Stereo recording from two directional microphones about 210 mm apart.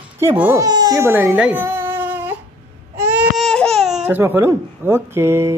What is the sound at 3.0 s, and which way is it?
Speech, 5° right (ahead or behind).